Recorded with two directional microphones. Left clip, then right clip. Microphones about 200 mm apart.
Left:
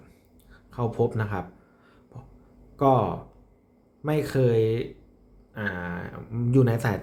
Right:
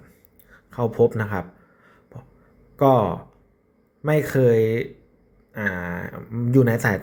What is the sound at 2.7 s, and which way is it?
Speech, 15° right (ahead or behind).